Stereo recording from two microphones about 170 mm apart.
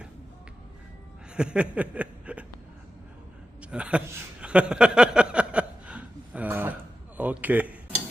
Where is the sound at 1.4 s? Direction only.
5° right (ahead or behind).